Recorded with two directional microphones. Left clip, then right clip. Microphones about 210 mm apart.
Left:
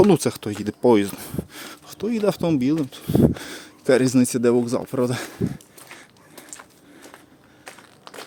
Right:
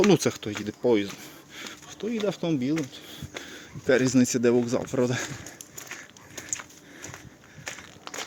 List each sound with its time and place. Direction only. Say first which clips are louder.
0.1 s speech: left 3 dB; 20° left (ahead or behind)
7.6 s crushing: right 3 dB; 10° left (ahead or behind)